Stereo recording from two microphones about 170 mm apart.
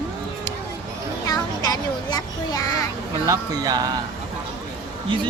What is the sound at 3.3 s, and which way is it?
Speech, 20° right (ahead or behind).